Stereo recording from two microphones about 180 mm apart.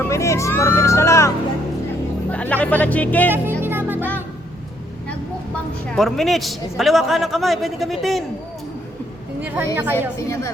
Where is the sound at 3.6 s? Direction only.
10° right (ahead or behind).